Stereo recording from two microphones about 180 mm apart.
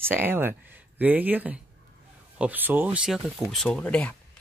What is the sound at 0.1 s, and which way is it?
Speech, 10° right (ahead or behind).